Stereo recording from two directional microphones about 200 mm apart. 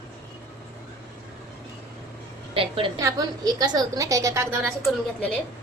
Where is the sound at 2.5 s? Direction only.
25° right (ahead or behind).